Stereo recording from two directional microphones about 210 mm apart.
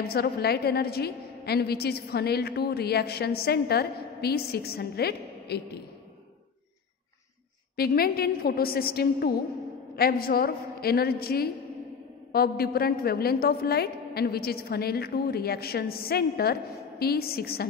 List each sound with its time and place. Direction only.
0.1 s a woman's voice: 50° left (ahead or behind)
7.7 s a woman's voice: 45° left (ahead or behind)